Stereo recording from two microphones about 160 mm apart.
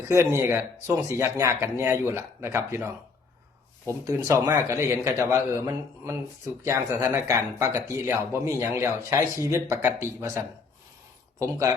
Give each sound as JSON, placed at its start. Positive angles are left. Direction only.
{"t": 0.0, "sound": "speech", "side_deg": -20}
{"t": 3.8, "sound": "speech", "side_deg": -20}